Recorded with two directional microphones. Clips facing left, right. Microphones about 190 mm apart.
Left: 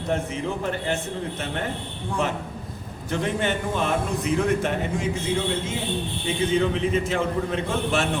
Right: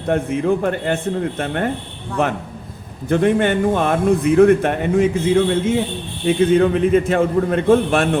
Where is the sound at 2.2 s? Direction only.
60° right (ahead or behind).